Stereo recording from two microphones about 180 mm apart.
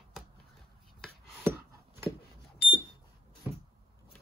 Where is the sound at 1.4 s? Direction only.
10° right (ahead or behind).